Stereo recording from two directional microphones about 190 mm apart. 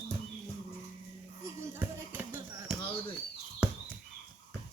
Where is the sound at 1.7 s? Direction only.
10° right (ahead or behind).